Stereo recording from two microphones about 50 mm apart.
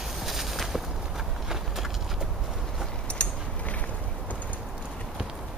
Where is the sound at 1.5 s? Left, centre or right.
Centre.